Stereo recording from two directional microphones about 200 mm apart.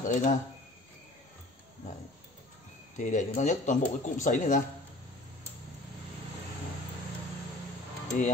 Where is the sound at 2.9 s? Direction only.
40° left (ahead or behind).